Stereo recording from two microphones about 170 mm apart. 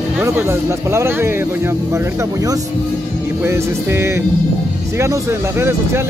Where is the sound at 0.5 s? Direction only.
15° right (ahead or behind).